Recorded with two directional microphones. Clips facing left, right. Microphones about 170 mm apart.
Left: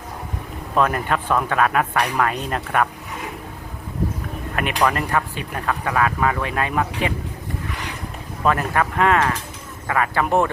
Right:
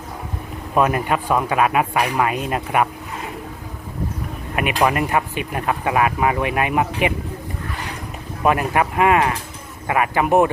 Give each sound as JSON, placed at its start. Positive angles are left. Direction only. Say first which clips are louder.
{"t": 0.8, "sound": "speech", "louder": "right 2 dB", "side_deg": -10}
{"t": 4.9, "sound": "speech", "louder": "right 2 dB", "side_deg": -15}
{"t": 8.4, "sound": "speech", "louder": "right 2 dB", "side_deg": -15}